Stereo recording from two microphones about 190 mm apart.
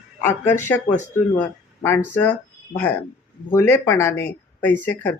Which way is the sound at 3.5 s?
10° left (ahead or behind).